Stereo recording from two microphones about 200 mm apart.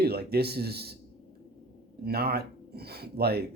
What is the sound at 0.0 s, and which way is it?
Speech, 50° right (ahead or behind).